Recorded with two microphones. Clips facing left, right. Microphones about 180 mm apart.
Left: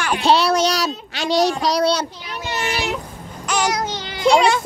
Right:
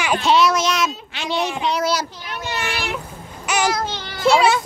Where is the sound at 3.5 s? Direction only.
5° right (ahead or behind).